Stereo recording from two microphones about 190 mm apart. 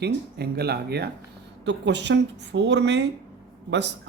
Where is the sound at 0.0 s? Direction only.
60° right (ahead or behind).